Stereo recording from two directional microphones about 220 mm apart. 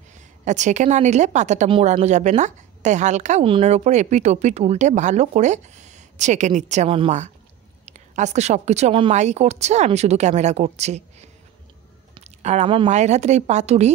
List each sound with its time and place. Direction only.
0.5 s a woman's voice: 35° right (ahead or behind)
12.1 s a woman's voice: 30° right (ahead or behind)